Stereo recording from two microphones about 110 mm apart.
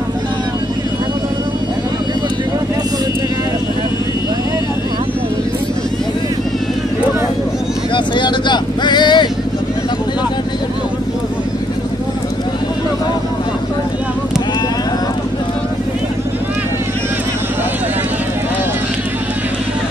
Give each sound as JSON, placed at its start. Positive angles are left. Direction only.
{"t": 7.9, "sound": "vehicle", "side_deg": 45}